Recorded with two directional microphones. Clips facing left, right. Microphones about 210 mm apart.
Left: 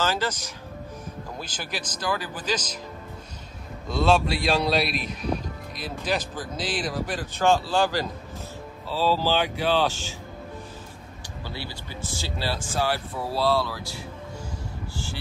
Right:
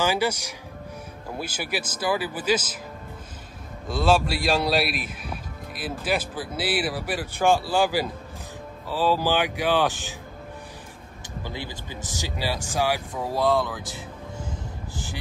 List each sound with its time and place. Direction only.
0.0 s speech: 10° right (ahead or behind)
4.0 s a man's voice: 5° right (ahead or behind)
11.4 s speech: 15° right (ahead or behind)